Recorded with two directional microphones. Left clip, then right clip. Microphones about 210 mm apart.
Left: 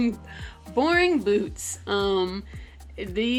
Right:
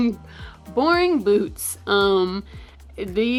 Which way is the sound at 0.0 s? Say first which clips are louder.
Right 3 dB; 15° right (ahead or behind).